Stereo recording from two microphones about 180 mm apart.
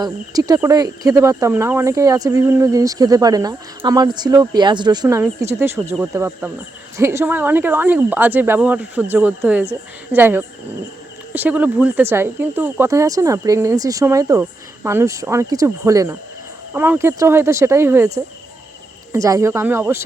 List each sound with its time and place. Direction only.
0.0 s speech: 20° right (ahead or behind)